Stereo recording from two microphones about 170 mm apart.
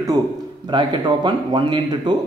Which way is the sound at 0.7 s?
25° right (ahead or behind).